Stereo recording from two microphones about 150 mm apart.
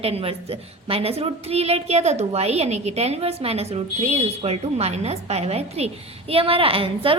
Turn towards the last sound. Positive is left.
turn(degrees=-35)  # may be behind; listen again after turning